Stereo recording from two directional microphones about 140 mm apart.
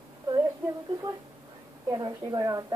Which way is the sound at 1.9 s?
30° right (ahead or behind).